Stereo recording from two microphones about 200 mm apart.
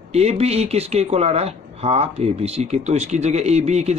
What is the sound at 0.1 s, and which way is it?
Speech, 30° right (ahead or behind).